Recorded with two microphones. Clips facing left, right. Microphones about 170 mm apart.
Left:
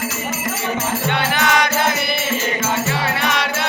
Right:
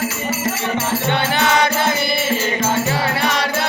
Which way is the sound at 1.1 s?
30° right (ahead or behind).